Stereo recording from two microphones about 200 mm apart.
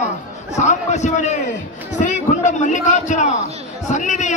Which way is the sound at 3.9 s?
35° left (ahead or behind).